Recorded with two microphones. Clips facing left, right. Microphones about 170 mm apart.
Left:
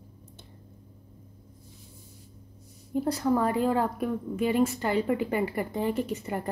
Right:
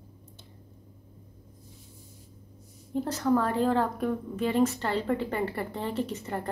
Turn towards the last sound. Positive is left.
turn(degrees=10)  # may be behind; listen again after turning